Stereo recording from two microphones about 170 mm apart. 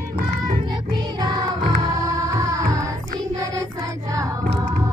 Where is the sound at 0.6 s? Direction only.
25° right (ahead or behind).